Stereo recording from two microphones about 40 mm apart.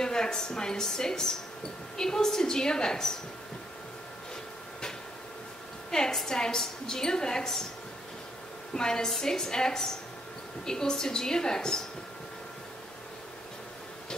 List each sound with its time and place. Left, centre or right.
0.0 s a woman's voice: centre
5.9 s a woman's voice: centre
8.7 s a woman's voice: centre